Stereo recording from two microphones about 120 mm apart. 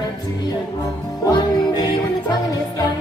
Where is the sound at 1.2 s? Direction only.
35° left (ahead or behind).